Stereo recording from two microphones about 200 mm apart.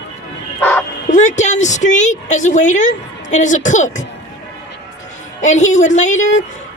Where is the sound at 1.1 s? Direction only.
35° left (ahead or behind).